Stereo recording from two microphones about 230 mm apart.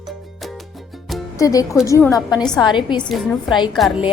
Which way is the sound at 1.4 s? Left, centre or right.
Centre.